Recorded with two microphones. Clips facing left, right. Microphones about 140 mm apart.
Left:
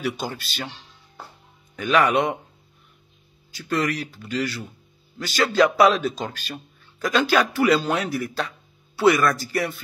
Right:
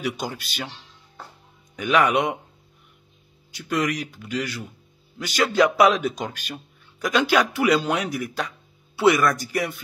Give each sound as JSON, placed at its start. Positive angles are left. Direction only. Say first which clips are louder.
{"t": 0.0, "sound": "speech", "louder": "left 1 dB", "side_deg": -15}
{"t": 1.8, "sound": "speech", "louder": "even", "side_deg": -20}
{"t": 3.6, "sound": "speech", "louder": "even", "side_deg": -10}
{"t": 5.6, "sound": "speech", "louder": "left 1 dB", "side_deg": 0}
{"t": 5.9, "sound": "speech", "louder": "even", "side_deg": -15}